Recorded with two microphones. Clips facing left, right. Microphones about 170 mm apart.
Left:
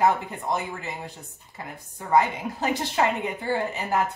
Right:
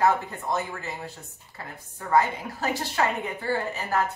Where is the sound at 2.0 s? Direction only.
15° left (ahead or behind).